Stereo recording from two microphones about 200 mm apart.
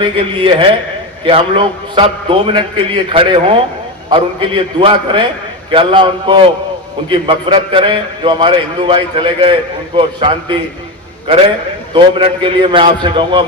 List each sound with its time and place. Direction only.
0.0 s a man's voice: 25° right (ahead or behind)
12.1 s a man's voice: 25° right (ahead or behind)